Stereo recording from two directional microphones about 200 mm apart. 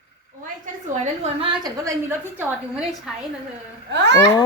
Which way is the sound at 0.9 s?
35° right (ahead or behind).